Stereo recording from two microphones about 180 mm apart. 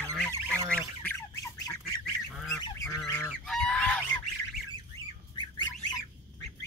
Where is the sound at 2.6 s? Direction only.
15° left (ahead or behind).